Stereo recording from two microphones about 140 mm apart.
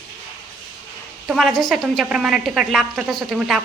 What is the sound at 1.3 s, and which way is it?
A woman's voice, centre (ahead or behind).